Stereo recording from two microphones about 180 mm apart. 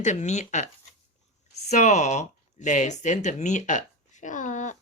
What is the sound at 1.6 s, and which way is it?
Speech, 40° left (ahead or behind).